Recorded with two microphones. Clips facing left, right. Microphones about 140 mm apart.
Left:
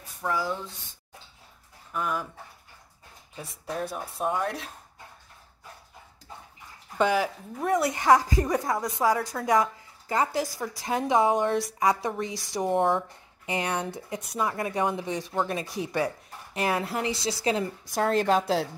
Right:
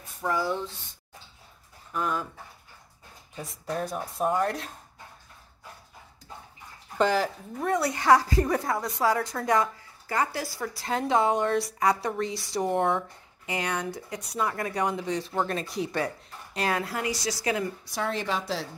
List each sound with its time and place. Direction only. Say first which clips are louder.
0.3 s speech: right 1 dB; centre (ahead or behind)
2.0 s speech: right 1 dB; 5° left (ahead or behind)
3.3 s speech: right 1 dB; 5° left (ahead or behind)
7.0 s a woman's voice: even; 5° left (ahead or behind)
12.6 s speech: left 2 dB; centre (ahead or behind)
13.5 s a woman's voice: left 1 dB; 25° left (ahead or behind)
17.9 s a woman's voice: left 7 dB; 45° left (ahead or behind)